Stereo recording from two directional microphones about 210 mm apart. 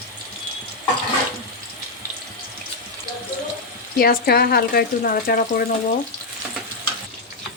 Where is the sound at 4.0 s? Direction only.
45° left (ahead or behind).